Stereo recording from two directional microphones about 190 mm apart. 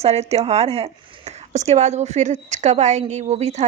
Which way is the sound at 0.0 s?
35° right (ahead or behind).